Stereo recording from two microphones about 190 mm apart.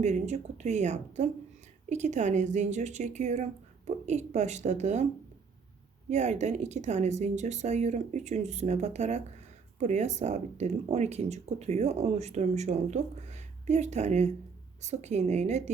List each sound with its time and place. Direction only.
0.0 s speech: 35° right (ahead or behind)
6.1 s speech: 35° right (ahead or behind)